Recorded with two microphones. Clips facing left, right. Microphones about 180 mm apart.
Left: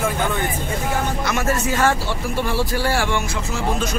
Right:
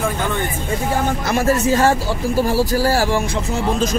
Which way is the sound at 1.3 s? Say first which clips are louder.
Right 8 dB; 30° right (ahead or behind).